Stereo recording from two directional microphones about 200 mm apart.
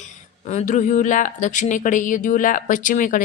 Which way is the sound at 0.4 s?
35° left (ahead or behind).